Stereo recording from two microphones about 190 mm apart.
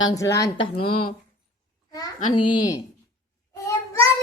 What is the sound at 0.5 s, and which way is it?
Speech, 30° left (ahead or behind).